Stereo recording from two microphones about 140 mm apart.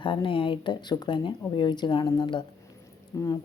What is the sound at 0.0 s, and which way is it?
Speech, 35° left (ahead or behind).